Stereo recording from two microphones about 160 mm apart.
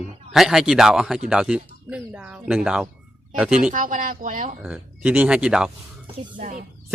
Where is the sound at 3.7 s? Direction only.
55° right (ahead or behind).